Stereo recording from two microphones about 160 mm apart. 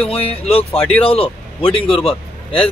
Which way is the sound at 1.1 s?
35° left (ahead or behind).